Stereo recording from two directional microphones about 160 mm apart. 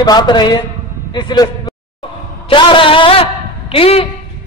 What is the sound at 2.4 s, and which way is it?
A man's voice, 35° left (ahead or behind).